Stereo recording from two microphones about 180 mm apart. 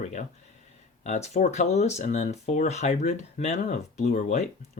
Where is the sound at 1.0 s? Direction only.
40° left (ahead or behind).